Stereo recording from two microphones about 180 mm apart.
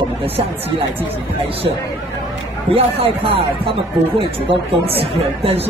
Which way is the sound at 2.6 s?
30° right (ahead or behind).